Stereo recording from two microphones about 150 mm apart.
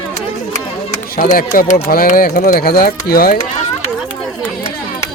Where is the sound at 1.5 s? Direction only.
80° left.